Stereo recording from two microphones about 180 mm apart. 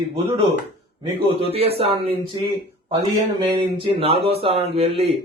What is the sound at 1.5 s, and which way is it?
Speech, 35° right (ahead or behind).